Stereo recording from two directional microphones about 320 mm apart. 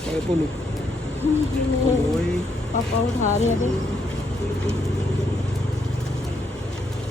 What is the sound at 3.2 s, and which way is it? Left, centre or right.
Speech, left.